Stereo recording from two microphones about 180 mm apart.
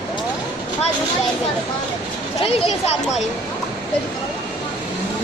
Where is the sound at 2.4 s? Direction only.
35° left (ahead or behind).